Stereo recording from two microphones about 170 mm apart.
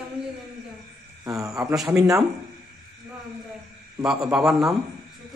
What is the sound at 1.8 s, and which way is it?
Speech, 20° right (ahead or behind).